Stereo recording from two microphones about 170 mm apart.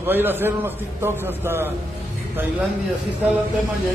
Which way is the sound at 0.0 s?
10° right (ahead or behind).